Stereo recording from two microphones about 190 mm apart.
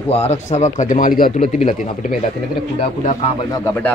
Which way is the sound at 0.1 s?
35° left (ahead or behind).